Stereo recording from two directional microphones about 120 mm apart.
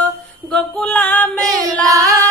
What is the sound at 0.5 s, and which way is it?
Female singing, 10° left (ahead or behind).